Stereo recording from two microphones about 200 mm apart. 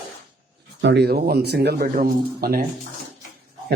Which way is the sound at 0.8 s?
60° right (ahead or behind).